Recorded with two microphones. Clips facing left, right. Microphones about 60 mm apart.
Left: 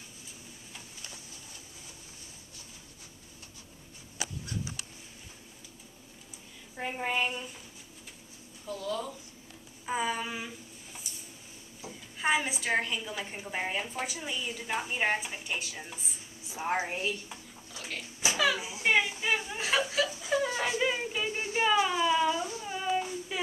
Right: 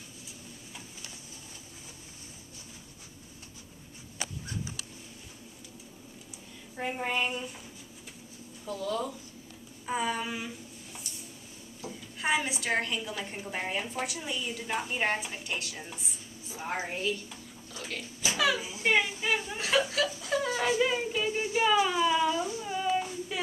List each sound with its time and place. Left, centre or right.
6.8 s a woman's voice: centre
8.6 s a woman's voice: centre
9.8 s a sound: centre
11.8 s a woman's voice: centre
16.4 s a woman's voice: left
17.7 s a sound: centre
18.9 s chuckle: centre
20.8 s yodeling: centre
21.8 s a sound: centre
22.4 s child singing: centre